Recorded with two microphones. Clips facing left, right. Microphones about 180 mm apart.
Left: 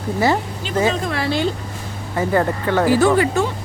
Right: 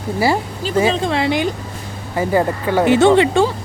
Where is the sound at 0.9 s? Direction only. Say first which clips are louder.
Right 4 dB; 25° right (ahead or behind).